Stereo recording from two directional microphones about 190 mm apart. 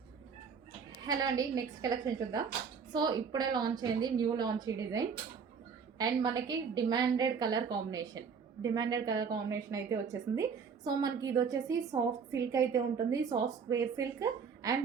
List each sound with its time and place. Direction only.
1.0 s a woman's voice: 20° right (ahead or behind)
2.9 s a woman's voice: 20° right (ahead or behind)